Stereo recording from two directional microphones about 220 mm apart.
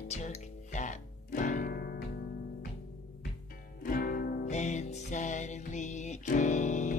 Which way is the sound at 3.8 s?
40° left (ahead or behind).